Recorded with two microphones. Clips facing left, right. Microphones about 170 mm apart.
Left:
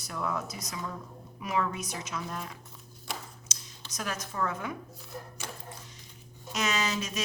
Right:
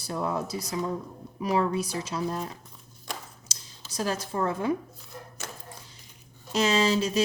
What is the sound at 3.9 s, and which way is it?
Speech, 30° right (ahead or behind).